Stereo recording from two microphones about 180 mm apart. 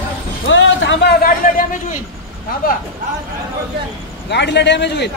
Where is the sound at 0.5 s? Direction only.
90° left.